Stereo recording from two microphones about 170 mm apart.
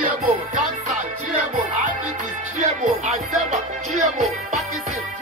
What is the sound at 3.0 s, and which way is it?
Music, 45° right (ahead or behind).